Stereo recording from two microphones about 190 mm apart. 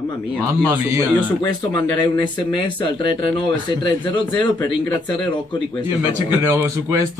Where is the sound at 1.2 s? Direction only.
20° left (ahead or behind).